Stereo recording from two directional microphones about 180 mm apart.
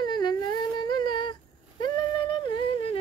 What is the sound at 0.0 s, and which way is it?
Humming, 25° left (ahead or behind).